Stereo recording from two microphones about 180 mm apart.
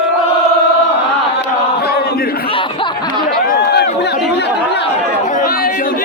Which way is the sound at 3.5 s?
65° left (ahead or behind).